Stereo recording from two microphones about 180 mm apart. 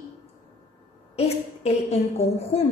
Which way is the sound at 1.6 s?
35° left (ahead or behind).